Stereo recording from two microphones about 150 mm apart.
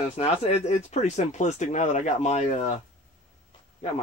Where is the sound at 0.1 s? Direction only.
45° left (ahead or behind).